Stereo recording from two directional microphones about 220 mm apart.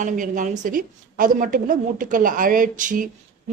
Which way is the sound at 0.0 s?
35° right (ahead or behind).